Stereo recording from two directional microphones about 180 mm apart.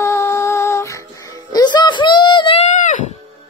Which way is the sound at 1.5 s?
25° left (ahead or behind).